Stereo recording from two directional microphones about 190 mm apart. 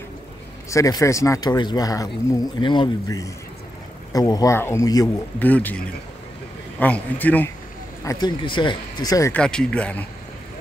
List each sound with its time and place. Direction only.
0.7 s a man's voice: 15° left (ahead or behind)
8.0 s speech: 20° left (ahead or behind)
9.3 s speech: 5° left (ahead or behind)